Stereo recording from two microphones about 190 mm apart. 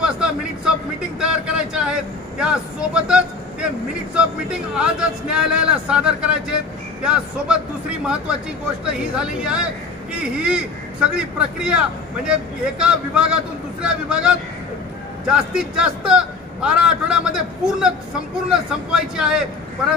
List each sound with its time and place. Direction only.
0.0 s a sound: 5° right (ahead or behind)
4.1 s speech: 5° right (ahead or behind)
8.8 s speech: 5° right (ahead or behind)